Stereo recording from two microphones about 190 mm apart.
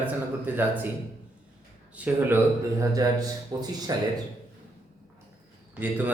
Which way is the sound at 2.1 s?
10° right (ahead or behind).